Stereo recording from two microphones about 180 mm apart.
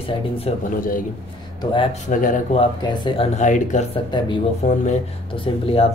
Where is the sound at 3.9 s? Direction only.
25° left (ahead or behind).